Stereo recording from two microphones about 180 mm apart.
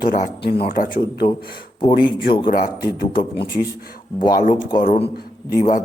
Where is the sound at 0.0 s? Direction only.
45° left (ahead or behind).